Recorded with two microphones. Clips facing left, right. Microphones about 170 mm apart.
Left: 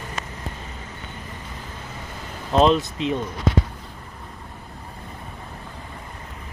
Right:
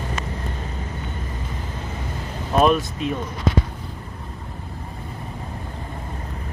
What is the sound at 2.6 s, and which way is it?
Speech, 20° left (ahead or behind).